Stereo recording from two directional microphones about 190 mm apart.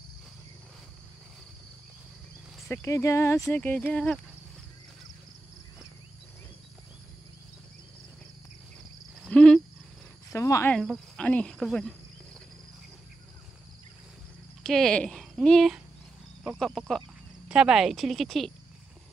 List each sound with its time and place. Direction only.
2.7 s speech: 15° left (ahead or behind)
9.2 s cricket: 5° left (ahead or behind)
10.3 s cricket: 15° left (ahead or behind)
10.8 s cricket: 5° left (ahead or behind)
14.6 s speech: centre (ahead or behind)
16.4 s cricket: centre (ahead or behind)